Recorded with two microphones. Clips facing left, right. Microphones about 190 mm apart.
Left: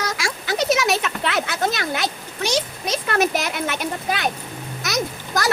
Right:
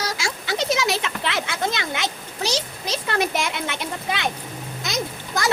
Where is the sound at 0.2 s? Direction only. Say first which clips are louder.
Left 2 dB; 25° right (ahead or behind).